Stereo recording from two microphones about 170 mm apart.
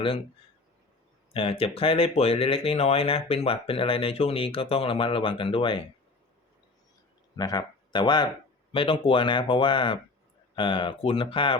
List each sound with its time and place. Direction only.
1.3 s speech: 35° left (ahead or behind)
7.3 s speech: 20° left (ahead or behind)